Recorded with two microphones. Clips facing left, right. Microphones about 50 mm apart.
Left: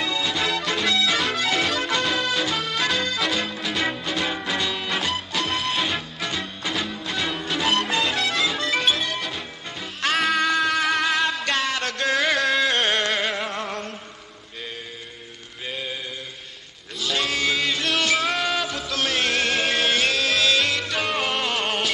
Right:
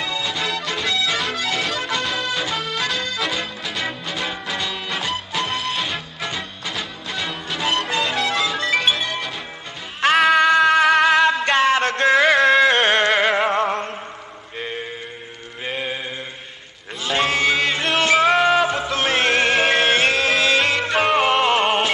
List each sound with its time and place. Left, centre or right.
0.0 s music: centre
10.5 s music: right
11.4 s a sound: right
12.3 s carnatic music: centre
12.7 s a sound: centre
13.0 s music: right
13.7 s a sound: right
15.6 s chant: right
17.0 s music: right